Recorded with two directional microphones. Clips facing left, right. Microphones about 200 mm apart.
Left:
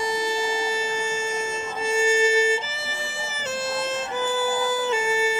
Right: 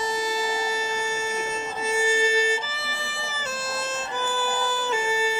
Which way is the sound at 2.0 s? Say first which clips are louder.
Left 4 dB; 25° left (ahead or behind).